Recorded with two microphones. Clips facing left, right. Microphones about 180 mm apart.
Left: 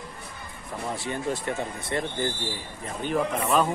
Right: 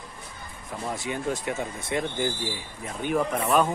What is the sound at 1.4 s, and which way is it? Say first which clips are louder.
Speech: even; 5° right (ahead or behind).